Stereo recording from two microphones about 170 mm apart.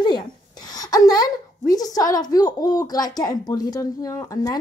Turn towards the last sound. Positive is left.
turn(degrees=20)  # may be behind; listen again after turning